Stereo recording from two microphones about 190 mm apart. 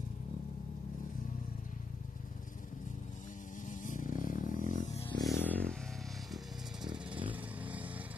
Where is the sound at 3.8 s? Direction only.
45° left (ahead or behind).